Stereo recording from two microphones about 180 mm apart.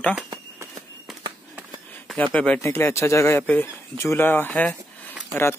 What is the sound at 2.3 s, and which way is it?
Speech, 10° left (ahead or behind).